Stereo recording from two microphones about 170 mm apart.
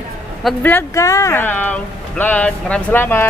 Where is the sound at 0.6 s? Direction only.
10° left (ahead or behind).